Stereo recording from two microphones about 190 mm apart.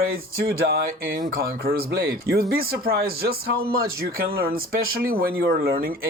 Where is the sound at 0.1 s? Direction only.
55° right (ahead or behind).